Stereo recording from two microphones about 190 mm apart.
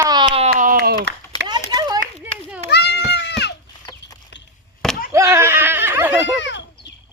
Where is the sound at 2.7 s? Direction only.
60° left (ahead or behind).